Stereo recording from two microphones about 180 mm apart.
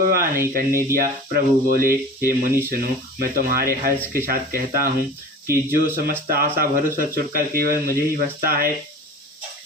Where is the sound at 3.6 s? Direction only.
55° right (ahead or behind).